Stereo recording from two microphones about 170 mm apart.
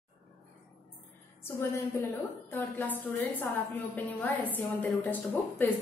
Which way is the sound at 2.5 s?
10° left (ahead or behind).